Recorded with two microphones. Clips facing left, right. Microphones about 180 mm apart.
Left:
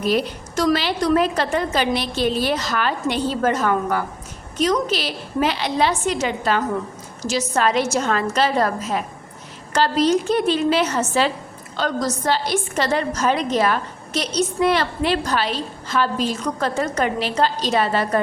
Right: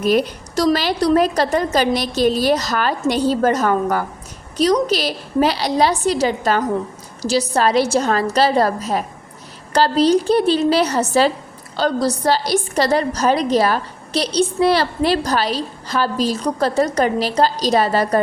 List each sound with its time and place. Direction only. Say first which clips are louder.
0.5 s a woman's voice: right 3 dB; 35° right (ahead or behind)